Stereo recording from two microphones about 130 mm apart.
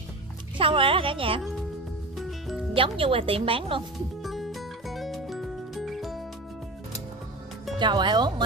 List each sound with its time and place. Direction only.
0.6 s speech: 40° right (ahead or behind)
2.1 s music: centre (ahead or behind)
2.7 s speech: 45° right (ahead or behind)
4.2 s music: centre (ahead or behind)
7.8 s speech: 35° right (ahead or behind)